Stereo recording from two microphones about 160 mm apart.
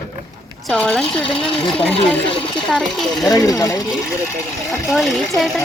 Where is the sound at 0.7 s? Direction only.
5° left (ahead or behind).